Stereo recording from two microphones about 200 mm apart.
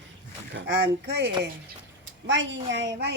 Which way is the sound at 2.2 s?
65° right (ahead or behind).